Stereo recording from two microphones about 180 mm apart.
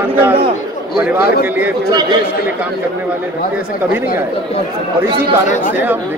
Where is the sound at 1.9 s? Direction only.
25° right (ahead or behind).